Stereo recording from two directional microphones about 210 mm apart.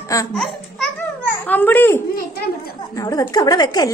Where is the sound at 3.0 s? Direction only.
15° left (ahead or behind).